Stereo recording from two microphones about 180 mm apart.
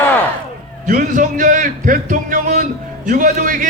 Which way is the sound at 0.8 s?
50° right (ahead or behind).